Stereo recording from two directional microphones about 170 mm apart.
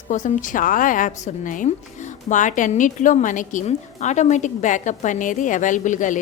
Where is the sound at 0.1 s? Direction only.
50° left (ahead or behind).